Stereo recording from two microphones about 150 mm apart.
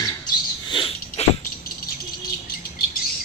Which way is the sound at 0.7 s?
35° left (ahead or behind).